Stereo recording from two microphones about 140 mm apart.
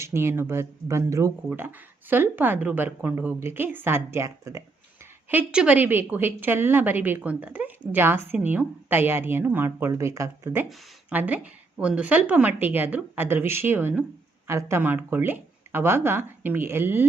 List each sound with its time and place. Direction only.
0.0 s a woman's voice: 20° right (ahead or behind)
5.3 s a woman's voice: 10° right (ahead or behind)